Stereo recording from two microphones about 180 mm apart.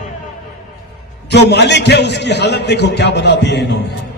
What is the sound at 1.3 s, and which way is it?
A man's voice, 70° left (ahead or behind).